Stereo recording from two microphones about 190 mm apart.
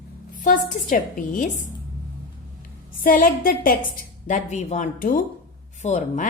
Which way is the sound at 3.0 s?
50° left (ahead or behind).